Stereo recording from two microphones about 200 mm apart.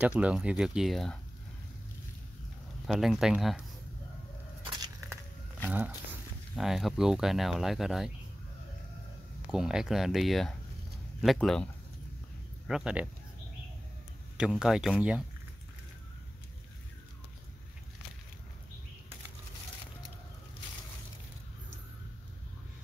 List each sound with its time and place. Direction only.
0.0 s speech: 5° right (ahead or behind)
2.9 s speech: centre (ahead or behind)
4.6 s a sound: 20° right (ahead or behind)
6.5 s speech: centre (ahead or behind)
9.5 s speech: centre (ahead or behind)
14.3 s speech: 5° right (ahead or behind)